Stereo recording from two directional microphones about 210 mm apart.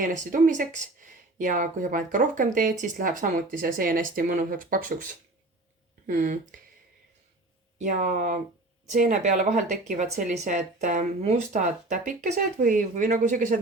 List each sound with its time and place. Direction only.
0.0 s speech: 40° right (ahead or behind)
6.1 s speech: 40° right (ahead or behind)
7.8 s speech: 35° right (ahead or behind)